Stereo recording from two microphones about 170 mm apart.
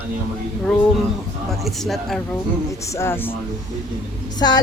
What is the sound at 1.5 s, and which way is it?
Speech, centre (ahead or behind).